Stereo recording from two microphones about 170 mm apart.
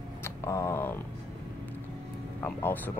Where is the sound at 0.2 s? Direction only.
15° left (ahead or behind).